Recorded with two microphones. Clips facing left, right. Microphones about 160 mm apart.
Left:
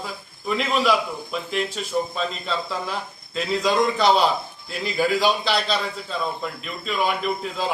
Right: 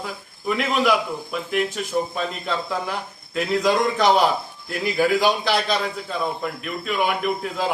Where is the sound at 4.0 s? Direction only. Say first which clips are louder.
Right 1 dB; 15° right (ahead or behind).